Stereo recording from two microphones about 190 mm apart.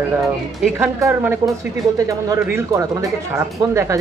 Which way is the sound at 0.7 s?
10° right (ahead or behind).